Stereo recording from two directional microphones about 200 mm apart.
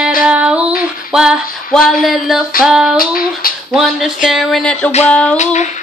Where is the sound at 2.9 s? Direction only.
45° left (ahead or behind).